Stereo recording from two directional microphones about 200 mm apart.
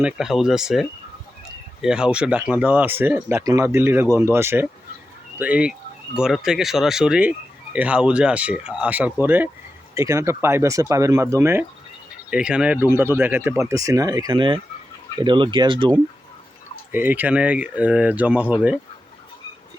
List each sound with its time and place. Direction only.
0.0 s speech: 5° right (ahead or behind); by 16.0 s 25° right (ahead or behind)
16.9 s speech: 10° right (ahead or behind)